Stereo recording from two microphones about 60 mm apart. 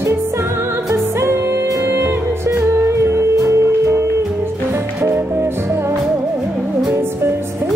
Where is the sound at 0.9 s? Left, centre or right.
Right.